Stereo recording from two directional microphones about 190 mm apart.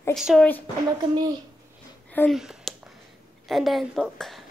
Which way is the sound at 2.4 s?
Centre (ahead or behind).